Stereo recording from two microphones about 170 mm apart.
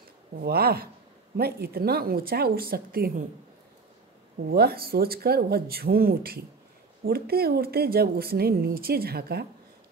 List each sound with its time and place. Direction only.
0.4 s speech: 65° right (ahead or behind)
4.5 s speech: 65° right (ahead or behind)